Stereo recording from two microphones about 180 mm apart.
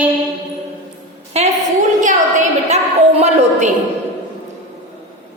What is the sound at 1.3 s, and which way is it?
Speech, 35° right (ahead or behind).